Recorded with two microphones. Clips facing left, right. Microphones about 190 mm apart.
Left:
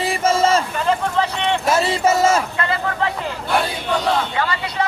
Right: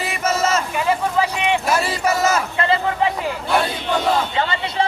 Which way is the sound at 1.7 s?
25° left (ahead or behind).